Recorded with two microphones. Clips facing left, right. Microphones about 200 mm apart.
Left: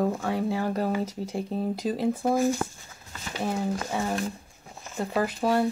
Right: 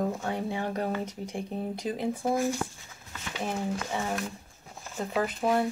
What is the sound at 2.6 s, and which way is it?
Speech, 50° left (ahead or behind).